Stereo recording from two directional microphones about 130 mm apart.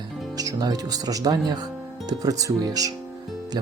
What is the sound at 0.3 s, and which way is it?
Speech, 30° right (ahead or behind).